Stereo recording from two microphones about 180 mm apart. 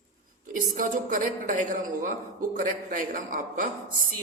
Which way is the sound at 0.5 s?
45° right (ahead or behind).